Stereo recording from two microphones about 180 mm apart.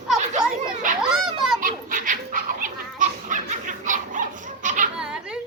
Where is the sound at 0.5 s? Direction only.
45° right (ahead or behind).